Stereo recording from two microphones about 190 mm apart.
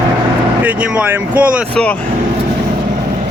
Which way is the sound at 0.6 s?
5° right (ahead or behind).